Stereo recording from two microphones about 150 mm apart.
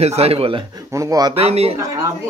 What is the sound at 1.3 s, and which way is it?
Speech, 45° right (ahead or behind).